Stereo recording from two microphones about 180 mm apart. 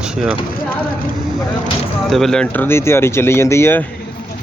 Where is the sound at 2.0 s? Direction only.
Centre (ahead or behind).